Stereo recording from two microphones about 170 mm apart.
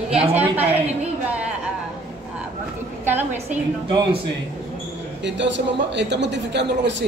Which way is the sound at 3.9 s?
30° right (ahead or behind).